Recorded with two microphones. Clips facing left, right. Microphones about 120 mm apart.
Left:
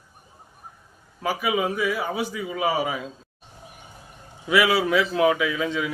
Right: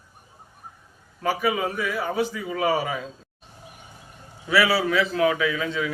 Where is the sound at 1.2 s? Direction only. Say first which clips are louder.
Even; 10° left (ahead or behind).